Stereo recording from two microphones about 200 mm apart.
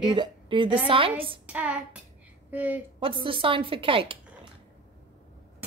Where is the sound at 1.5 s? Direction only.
5° right (ahead or behind).